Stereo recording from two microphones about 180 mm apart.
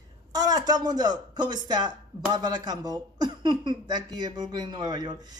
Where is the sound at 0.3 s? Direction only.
20° right (ahead or behind).